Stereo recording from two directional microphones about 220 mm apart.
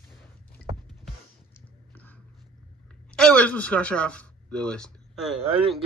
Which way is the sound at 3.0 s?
5° left (ahead or behind).